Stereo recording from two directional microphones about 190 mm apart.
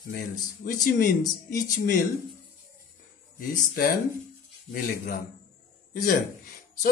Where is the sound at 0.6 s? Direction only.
45° left (ahead or behind).